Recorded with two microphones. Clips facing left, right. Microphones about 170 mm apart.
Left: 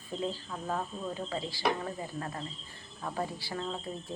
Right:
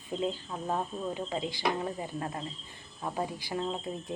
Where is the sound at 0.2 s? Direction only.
20° right (ahead or behind).